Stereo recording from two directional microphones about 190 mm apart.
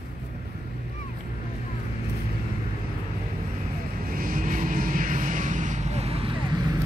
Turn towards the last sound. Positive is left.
turn(degrees=-30)  # may be behind; listen again after turning